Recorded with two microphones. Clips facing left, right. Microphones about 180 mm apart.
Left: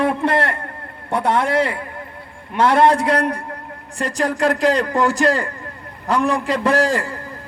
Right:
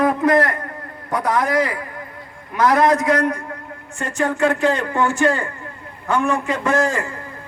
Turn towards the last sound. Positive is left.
turn(degrees=35)  # may be behind; listen again after turning